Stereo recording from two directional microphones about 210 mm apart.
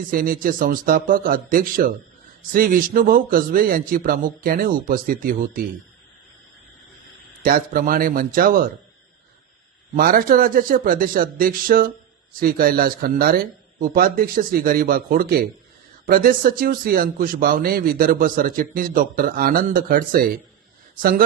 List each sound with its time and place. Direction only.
0.1 s a man's voice: 40° right (ahead or behind)
7.4 s speech: 45° right (ahead or behind)
9.9 s a man's voice: 40° right (ahead or behind)